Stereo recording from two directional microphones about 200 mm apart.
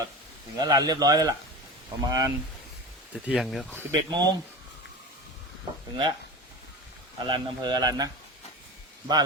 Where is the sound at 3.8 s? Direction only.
20° right (ahead or behind).